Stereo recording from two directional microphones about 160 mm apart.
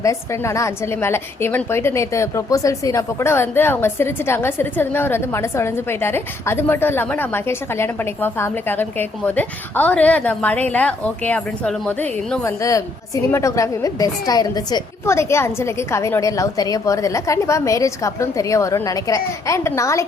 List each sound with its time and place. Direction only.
0.0 s a woman's voice: 20° left (ahead or behind)